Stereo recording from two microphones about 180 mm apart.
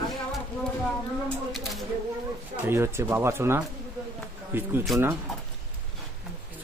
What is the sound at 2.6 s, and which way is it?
Speech, 15° right (ahead or behind).